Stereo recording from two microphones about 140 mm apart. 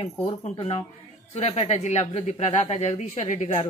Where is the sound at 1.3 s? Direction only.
50° left (ahead or behind).